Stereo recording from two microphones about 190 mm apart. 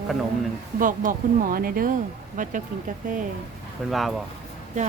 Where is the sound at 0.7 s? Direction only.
45° right (ahead or behind).